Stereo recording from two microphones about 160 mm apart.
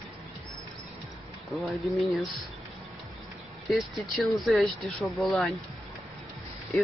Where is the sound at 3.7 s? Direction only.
Centre (ahead or behind).